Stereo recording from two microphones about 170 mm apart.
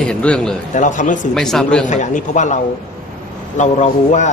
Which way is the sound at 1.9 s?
45° left (ahead or behind).